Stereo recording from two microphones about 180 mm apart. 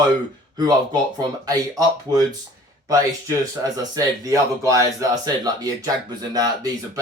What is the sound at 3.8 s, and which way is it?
Speech, 20° right (ahead or behind).